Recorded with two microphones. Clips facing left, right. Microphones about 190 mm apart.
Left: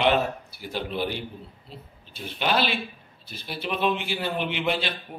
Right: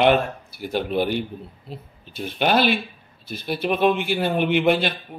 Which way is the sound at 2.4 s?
55° right (ahead or behind).